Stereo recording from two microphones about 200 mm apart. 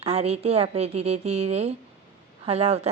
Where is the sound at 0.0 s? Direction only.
30° right (ahead or behind).